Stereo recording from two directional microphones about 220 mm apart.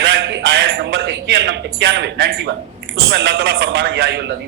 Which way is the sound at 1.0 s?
50° right (ahead or behind).